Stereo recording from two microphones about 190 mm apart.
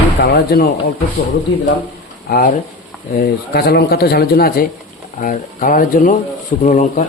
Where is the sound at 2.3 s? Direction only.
45° left (ahead or behind).